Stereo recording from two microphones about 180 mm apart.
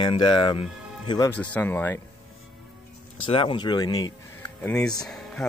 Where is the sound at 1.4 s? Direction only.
10° left (ahead or behind).